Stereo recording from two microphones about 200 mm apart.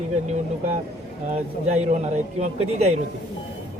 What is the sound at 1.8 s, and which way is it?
A man's voice, 35° right (ahead or behind).